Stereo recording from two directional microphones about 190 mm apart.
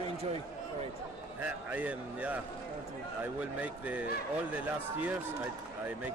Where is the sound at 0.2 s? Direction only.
30° right (ahead or behind).